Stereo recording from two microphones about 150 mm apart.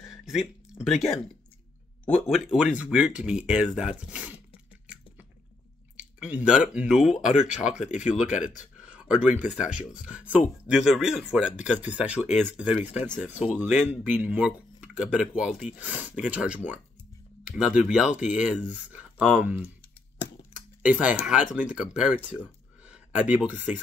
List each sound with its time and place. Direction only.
0.0 s a sound: centre (ahead or behind)
2.2 s speech: centre (ahead or behind)
5.9 s speech: 5° right (ahead or behind)
7.2 s speech: 50° left (ahead or behind)
8.0 s speech: 5° right (ahead or behind)
8.9 s a sound: 5° right (ahead or behind)
9.6 s speech: 5° right (ahead or behind)
20.8 s speech: 10° right (ahead or behind)